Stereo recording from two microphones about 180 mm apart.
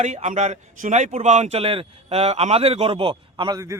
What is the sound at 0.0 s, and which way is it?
Speech, 40° right (ahead or behind).